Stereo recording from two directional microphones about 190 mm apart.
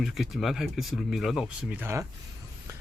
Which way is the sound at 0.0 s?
Centre (ahead or behind).